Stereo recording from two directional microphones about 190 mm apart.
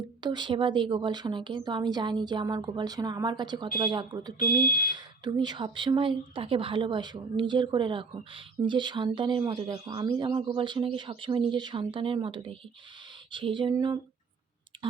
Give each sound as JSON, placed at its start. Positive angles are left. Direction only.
{"t": 0.2, "sound": "speech", "side_deg": -25}
{"t": 4.4, "sound": "speech", "side_deg": 45}
{"t": 4.9, "sound": "speech", "side_deg": -20}